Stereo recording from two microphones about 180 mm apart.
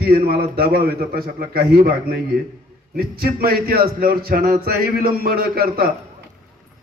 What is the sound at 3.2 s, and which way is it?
Mantra, 55° right (ahead or behind).